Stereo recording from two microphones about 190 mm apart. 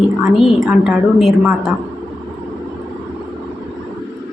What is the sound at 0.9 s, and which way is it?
Speech, centre (ahead or behind).